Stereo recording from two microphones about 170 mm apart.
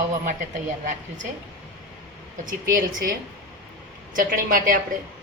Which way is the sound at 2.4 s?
50° right (ahead or behind).